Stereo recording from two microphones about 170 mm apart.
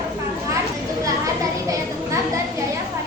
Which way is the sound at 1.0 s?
20° right (ahead or behind).